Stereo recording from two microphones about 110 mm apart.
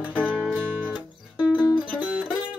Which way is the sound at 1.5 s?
40° left (ahead or behind).